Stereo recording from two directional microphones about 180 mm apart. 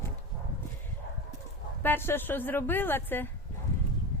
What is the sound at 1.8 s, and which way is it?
A woman's voice, 10° left (ahead or behind).